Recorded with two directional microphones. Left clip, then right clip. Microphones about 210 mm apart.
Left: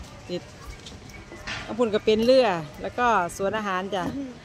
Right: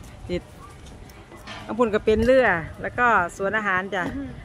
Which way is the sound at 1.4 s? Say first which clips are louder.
Left 1 dB; 25° right (ahead or behind).